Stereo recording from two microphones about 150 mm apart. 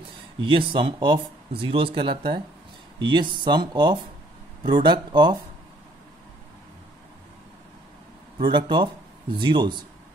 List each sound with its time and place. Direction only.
0.4 s speech: 35° right (ahead or behind)
8.4 s speech: 35° right (ahead or behind)